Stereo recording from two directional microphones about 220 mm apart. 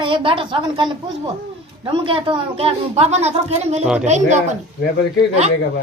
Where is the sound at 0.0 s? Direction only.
25° right (ahead or behind).